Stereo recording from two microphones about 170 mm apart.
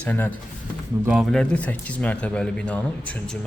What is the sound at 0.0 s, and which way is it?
Speech, 10° left (ahead or behind).